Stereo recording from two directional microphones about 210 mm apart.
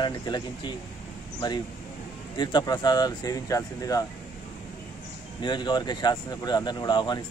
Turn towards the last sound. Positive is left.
turn(degrees=20)  # may be behind; listen again after turning